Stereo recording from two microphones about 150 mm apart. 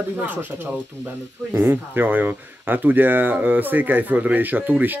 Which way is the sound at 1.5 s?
15° right (ahead or behind).